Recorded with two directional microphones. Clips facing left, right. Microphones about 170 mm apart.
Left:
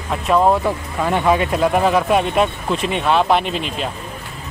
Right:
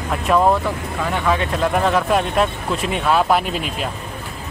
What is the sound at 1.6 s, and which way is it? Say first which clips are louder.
Speech: even; 5° left (ahead or behind).